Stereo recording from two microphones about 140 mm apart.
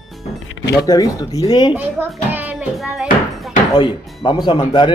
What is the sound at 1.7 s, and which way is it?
Speech, 15° right (ahead or behind).